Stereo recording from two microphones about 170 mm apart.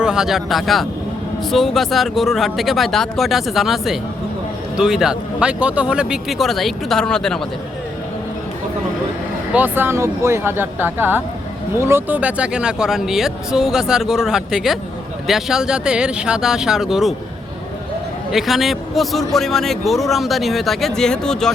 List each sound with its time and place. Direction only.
0.0 s a man's voice: 5° right (ahead or behind)
9.5 s a man's voice: 10° right (ahead or behind)
18.3 s a man's voice: centre (ahead or behind)